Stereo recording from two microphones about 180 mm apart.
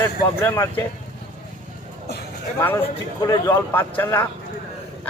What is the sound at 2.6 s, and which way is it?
Speech, 10° left (ahead or behind).